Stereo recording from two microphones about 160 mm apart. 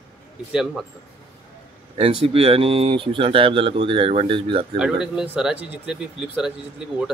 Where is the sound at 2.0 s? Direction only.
35° right (ahead or behind).